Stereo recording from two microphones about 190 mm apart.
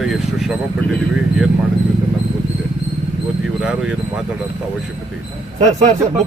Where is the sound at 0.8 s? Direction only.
10° left (ahead or behind).